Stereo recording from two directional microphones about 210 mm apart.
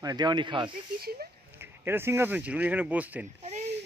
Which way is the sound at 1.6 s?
10° right (ahead or behind).